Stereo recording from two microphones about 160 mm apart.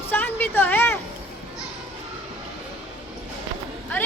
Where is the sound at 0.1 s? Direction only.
10° left (ahead or behind).